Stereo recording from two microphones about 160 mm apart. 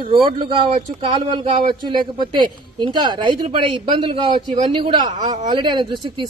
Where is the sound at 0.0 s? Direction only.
35° right (ahead or behind).